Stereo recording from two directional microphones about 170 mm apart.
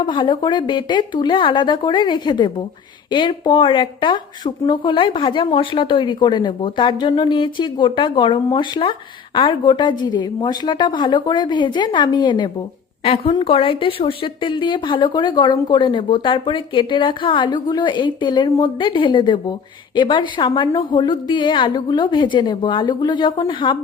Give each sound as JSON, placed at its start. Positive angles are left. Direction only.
{"t": 0.0, "sound": "speech", "side_deg": 30}